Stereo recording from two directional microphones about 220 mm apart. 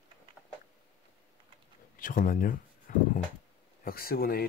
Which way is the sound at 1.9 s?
40° left (ahead or behind).